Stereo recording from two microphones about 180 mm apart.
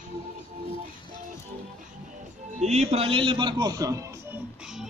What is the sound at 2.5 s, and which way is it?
A man's voice, 40° right (ahead or behind).